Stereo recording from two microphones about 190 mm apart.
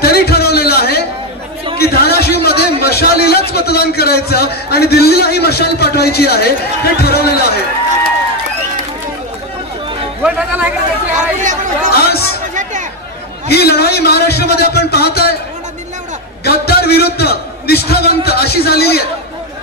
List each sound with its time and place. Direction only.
0.0 s a sound: 55° left (ahead or behind)
2.8 s a man's voice: 55° left (ahead or behind)
10.2 s music: 5° right (ahead or behind)
11.1 s chatter: 40° right (ahead or behind)
11.9 s chatter: 55° left (ahead or behind)
13.5 s a man's voice: 55° left (ahead or behind)
16.4 s a man's voice: 55° left (ahead or behind)